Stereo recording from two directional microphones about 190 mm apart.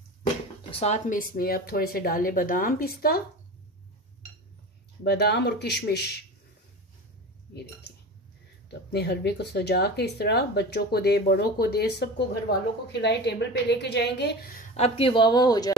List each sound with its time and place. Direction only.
0.7 s speech: 35° left (ahead or behind); by 3.2 s 50° left (ahead or behind)
5.0 s speech: 60° left (ahead or behind)
8.9 s speech: 60° left (ahead or behind)
14.6 s speech: 35° left (ahead or behind); by 15.7 s 20° left (ahead or behind)